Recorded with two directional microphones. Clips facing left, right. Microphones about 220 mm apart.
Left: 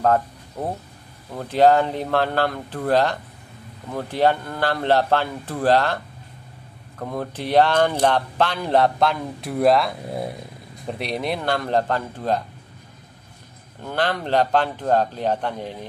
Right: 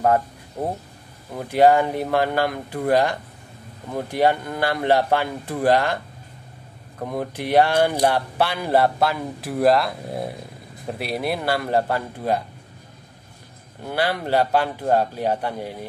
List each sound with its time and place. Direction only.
1.4 s speech: 10° right (ahead or behind)
7.0 s speech: 15° right (ahead or behind)
13.8 s speech: 10° right (ahead or behind)